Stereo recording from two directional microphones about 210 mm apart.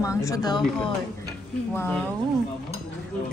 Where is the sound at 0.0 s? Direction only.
15° left (ahead or behind).